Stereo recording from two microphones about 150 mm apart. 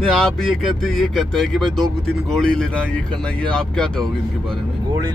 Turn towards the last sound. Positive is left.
turn(degrees=5)  # may be behind; listen again after turning